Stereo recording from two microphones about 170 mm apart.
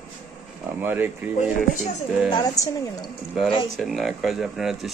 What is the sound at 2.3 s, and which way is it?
Speech, 20° left (ahead or behind).